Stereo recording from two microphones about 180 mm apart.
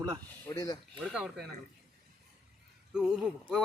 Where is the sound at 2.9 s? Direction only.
5° right (ahead or behind).